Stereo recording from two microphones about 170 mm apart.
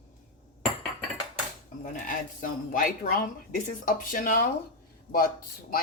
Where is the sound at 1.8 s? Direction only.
50° left (ahead or behind).